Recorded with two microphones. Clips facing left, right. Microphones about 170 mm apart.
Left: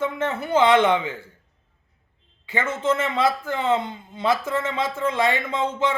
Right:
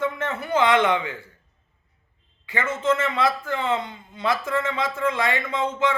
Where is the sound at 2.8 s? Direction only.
25° left (ahead or behind).